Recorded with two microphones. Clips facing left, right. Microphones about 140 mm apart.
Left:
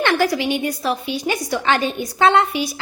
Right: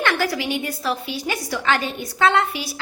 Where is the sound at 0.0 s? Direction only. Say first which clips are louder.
Left 4 dB; 20° left (ahead or behind).